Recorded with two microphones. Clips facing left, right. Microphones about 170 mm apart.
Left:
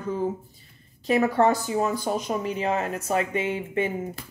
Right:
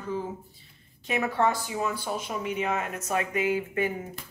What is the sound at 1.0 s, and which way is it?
Speech, 35° left (ahead or behind).